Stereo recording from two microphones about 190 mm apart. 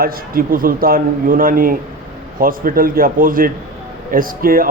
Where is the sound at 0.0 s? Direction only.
50° right (ahead or behind).